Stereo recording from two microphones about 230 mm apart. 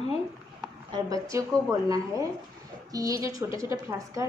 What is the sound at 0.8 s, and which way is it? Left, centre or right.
A woman's voice, centre.